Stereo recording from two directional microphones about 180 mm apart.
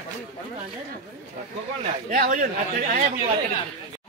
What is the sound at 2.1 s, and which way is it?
Speech, 50° right (ahead or behind).